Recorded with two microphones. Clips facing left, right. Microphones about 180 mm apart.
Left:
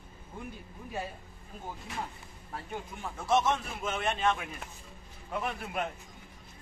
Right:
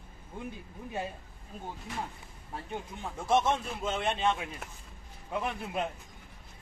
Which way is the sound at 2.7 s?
15° right (ahead or behind).